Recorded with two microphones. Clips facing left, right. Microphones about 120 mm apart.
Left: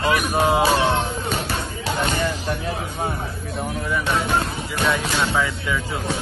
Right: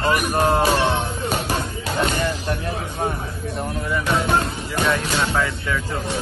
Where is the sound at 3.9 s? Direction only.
Centre (ahead or behind).